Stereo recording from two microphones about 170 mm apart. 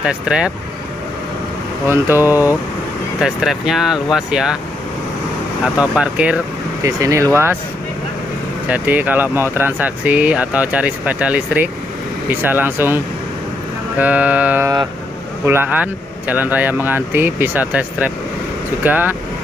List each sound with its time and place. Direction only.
0.0 s speech: 5° right (ahead or behind)
1.9 s speech: 15° right (ahead or behind)
5.8 s speech: 5° right (ahead or behind)
6.8 s speech: 20° right (ahead or behind)
8.6 s speech: 10° right (ahead or behind)